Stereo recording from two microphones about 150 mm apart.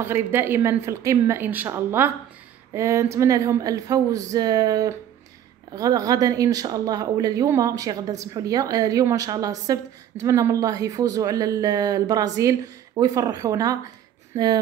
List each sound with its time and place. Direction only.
0.0 s a woman's voice: 15° right (ahead or behind)